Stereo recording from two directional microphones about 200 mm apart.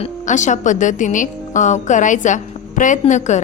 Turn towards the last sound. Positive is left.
turn(degrees=35)  # may be behind; listen again after turning